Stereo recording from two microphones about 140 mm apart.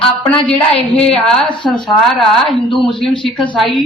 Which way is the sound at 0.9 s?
5° left (ahead or behind).